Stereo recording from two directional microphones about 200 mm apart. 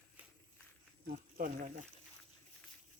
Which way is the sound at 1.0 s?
45° right (ahead or behind).